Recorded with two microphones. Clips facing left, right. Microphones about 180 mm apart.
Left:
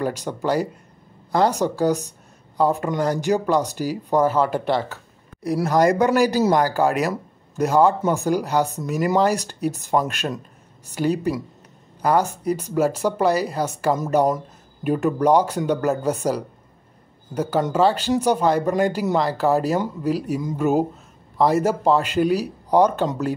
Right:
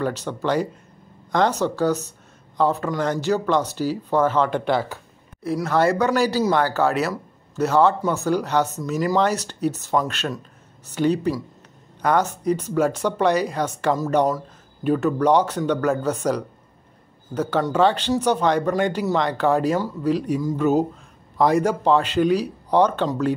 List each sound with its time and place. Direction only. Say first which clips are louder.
0.0 s speech: even; 10° left (ahead or behind)
5.4 s a man's voice: left 2 dB; 15° left (ahead or behind)